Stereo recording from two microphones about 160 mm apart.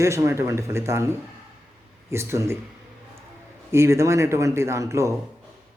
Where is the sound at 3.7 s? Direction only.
15° right (ahead or behind).